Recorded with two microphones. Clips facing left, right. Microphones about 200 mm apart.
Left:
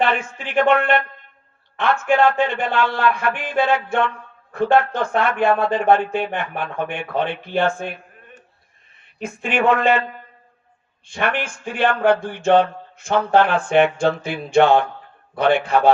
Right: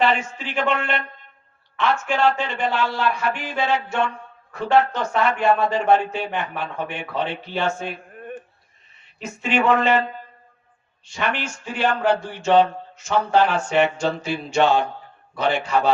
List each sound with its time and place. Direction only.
0.0 s speech: 55° left (ahead or behind)
9.1 s speech: 55° left (ahead or behind)
11.0 s speech: 55° left (ahead or behind)